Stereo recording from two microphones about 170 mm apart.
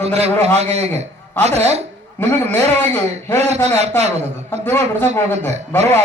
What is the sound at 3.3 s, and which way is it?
Speech, 40° right (ahead or behind).